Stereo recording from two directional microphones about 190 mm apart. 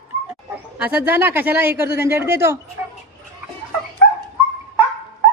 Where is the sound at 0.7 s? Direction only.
10° right (ahead or behind).